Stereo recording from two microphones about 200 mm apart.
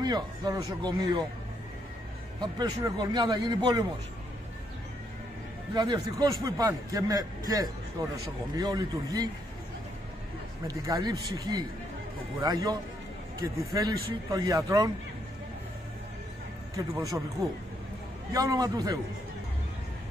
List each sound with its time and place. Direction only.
0.0 s speech: 20° right (ahead or behind)
2.4 s speech: 20° right (ahead or behind)
5.8 s speech: 20° right (ahead or behind)
10.7 s a man's voice: 20° right (ahead or behind)
16.7 s a man's voice: 15° right (ahead or behind)
18.3 s a man's voice: 20° right (ahead or behind)